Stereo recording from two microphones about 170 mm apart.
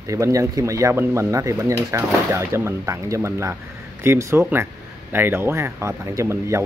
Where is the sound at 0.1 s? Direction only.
20° right (ahead or behind).